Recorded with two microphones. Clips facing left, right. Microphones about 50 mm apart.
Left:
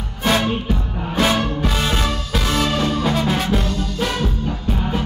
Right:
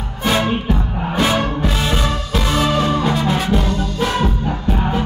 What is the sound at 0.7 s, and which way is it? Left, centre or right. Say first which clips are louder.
Music: right 4 dB; centre.